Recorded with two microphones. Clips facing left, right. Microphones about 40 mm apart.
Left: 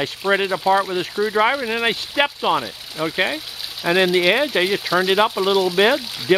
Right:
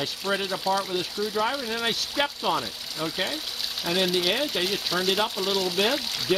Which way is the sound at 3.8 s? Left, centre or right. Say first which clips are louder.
Left 9 dB; left.